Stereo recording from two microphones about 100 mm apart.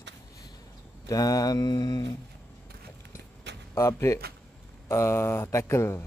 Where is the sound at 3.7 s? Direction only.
30° left (ahead or behind).